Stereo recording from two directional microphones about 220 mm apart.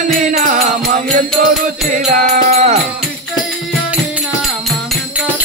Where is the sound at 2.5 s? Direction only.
30° right (ahead or behind).